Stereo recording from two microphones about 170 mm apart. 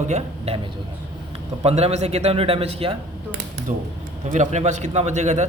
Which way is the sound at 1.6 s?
40° right (ahead or behind).